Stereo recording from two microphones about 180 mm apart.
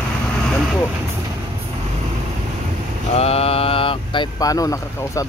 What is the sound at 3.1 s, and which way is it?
Speech, 35° left (ahead or behind).